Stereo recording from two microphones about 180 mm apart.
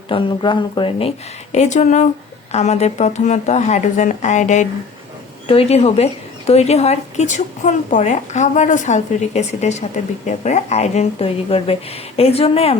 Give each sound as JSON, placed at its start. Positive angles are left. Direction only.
{"t": 0.1, "sound": "speech", "side_deg": 30}
{"t": 1.5, "sound": "speech", "side_deg": 40}